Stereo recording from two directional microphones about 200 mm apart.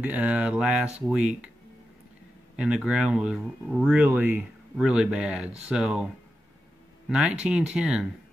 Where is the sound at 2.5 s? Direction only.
5° right (ahead or behind).